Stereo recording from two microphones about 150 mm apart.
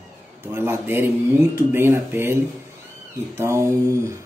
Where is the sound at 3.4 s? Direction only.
20° right (ahead or behind).